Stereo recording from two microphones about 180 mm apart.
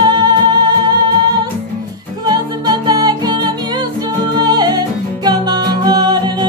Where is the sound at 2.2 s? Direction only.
25° right (ahead or behind).